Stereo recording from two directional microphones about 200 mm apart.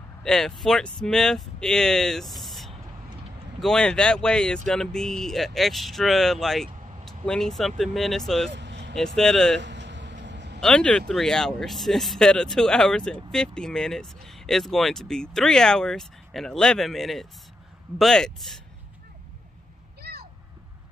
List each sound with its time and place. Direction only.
0.2 s speech: centre (ahead or behind)
8.5 s vehicle: 60° right (ahead or behind)
8.9 s speech: 5° left (ahead or behind)
9.6 s vehicle: 60° right (ahead or behind)
10.6 s speech: 5° left (ahead or behind)
20.0 s a sound: 55° right (ahead or behind)